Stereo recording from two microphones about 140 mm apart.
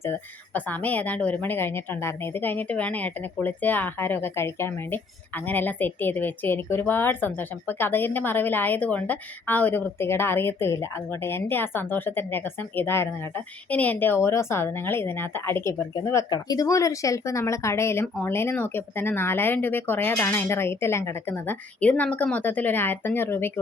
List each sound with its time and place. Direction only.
0.0 s speech: 15° left (ahead or behind)